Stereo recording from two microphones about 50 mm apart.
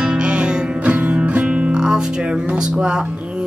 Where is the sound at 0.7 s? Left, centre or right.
Right.